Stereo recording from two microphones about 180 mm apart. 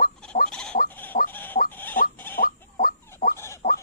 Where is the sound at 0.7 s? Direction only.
50° left (ahead or behind).